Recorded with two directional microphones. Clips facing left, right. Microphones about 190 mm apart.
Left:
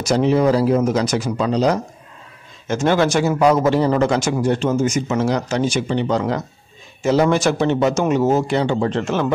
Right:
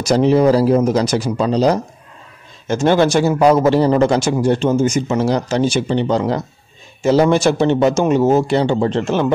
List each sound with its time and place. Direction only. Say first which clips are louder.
0.0 s a man's voice: right 3 dB; 35° right (ahead or behind)